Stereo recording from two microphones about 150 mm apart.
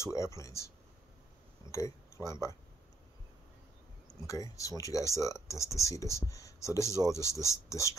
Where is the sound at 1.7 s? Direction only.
20° left (ahead or behind).